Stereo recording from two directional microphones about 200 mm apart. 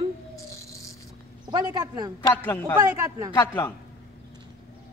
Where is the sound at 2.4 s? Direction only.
10° left (ahead or behind).